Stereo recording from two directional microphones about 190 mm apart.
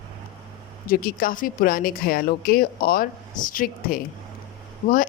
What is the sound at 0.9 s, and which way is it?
Speech, 50° left (ahead or behind).